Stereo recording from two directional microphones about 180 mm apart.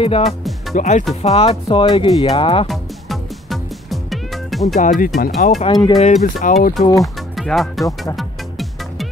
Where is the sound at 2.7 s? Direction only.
Centre (ahead or behind).